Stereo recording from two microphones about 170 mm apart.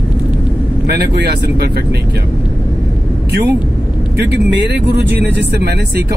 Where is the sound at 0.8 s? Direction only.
75° right (ahead or behind).